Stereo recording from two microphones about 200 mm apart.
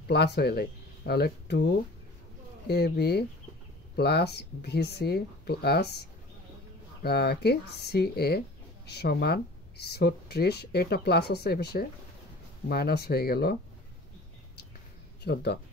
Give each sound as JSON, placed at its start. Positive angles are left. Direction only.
{"t": 0.1, "sound": "speech", "side_deg": 55}
{"t": 2.7, "sound": "speech", "side_deg": 55}
{"t": 7.0, "sound": "speech", "side_deg": 55}
{"t": 15.2, "sound": "speech", "side_deg": 55}